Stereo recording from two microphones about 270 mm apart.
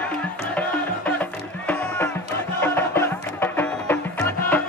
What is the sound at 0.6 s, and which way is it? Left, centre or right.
Music, centre.